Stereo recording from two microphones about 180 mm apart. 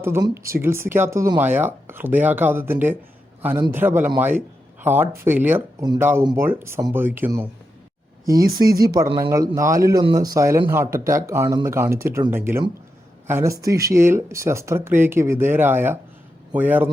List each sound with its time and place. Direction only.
0.0 s a man's voice: 15° right (ahead or behind)